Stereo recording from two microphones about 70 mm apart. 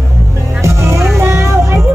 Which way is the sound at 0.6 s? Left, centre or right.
Right.